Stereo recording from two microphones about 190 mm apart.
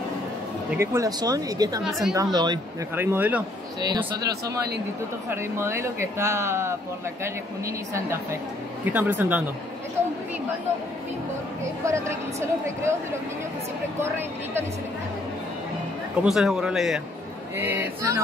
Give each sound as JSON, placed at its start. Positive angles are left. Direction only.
{"t": 0.7, "sound": "speech", "side_deg": -15}
{"t": 3.0, "sound": "speech", "side_deg": -10}
{"t": 3.8, "sound": "speech", "side_deg": -20}
{"t": 11.8, "sound": "speech", "side_deg": -15}
{"t": 13.9, "sound": "speech", "side_deg": -10}
{"t": 16.2, "sound": "speech", "side_deg": 0}